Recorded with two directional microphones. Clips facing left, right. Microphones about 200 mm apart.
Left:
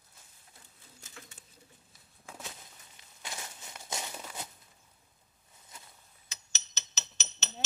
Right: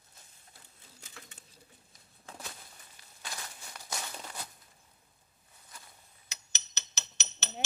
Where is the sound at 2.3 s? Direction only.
15° left (ahead or behind).